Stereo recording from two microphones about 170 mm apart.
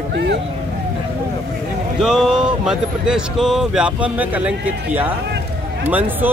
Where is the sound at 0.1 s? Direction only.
80° right.